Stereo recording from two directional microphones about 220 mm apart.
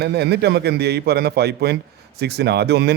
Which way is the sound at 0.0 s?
50° right (ahead or behind).